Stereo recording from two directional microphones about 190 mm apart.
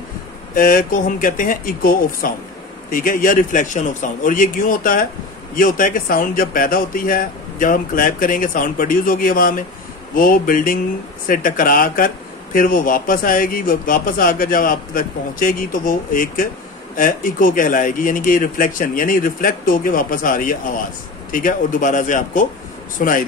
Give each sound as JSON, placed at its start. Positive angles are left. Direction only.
{"t": 0.6, "sound": "speech", "side_deg": 45}